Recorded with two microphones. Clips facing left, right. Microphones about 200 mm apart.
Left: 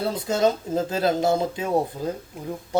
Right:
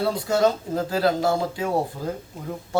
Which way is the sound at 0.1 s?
20° left (ahead or behind).